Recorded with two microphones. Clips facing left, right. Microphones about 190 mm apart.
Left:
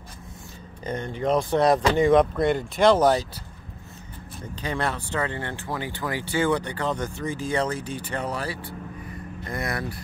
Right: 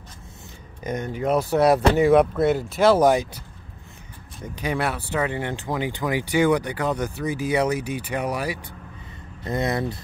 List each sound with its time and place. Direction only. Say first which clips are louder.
0.8 s speech: right 1 dB; 10° right (ahead or behind)
4.6 s speech: right 3 dB; 10° right (ahead or behind)